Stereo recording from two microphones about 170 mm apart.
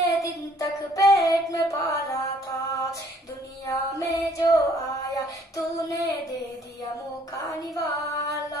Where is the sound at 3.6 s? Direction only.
20° left (ahead or behind).